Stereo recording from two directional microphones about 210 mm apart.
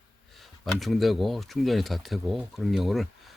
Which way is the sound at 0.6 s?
Centre (ahead or behind).